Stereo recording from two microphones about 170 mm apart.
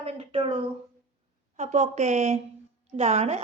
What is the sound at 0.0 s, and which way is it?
A woman's voice, 35° right (ahead or behind).